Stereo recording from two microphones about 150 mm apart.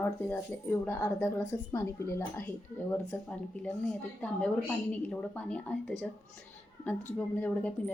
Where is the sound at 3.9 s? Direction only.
5° left (ahead or behind).